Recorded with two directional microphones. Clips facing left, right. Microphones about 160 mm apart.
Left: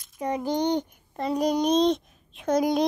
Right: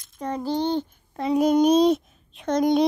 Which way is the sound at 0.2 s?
15° left (ahead or behind).